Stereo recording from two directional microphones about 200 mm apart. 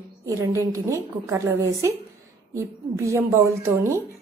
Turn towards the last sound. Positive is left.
turn(degrees=-15)  # may be behind; listen again after turning